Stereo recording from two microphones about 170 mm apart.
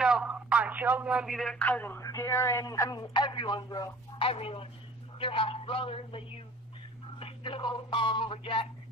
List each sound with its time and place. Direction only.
0.0 s speech: 5° right (ahead or behind); by 3.9 s 25° left (ahead or behind)
4.2 s speech: 35° left (ahead or behind)